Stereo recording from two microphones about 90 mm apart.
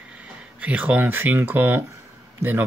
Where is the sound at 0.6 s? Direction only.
15° right (ahead or behind).